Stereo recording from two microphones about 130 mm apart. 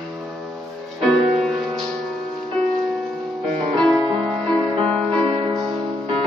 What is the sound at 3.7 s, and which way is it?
Music, 5° left (ahead or behind).